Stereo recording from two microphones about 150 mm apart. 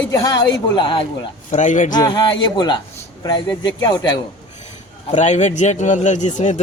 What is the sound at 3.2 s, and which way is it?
Speech, 30° left (ahead or behind).